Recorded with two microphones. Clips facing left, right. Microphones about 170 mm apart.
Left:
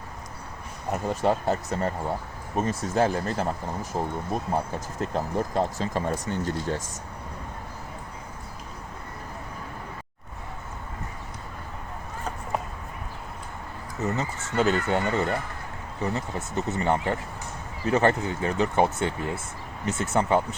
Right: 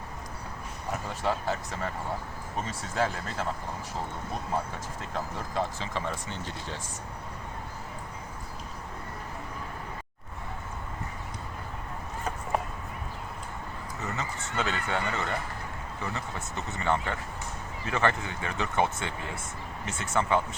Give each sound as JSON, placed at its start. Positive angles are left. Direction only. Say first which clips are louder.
{"t": 1.0, "sound": "speech", "louder": "left 7 dB", "side_deg": 45}
{"t": 14.0, "sound": "speech", "louder": "left 7 dB", "side_deg": 40}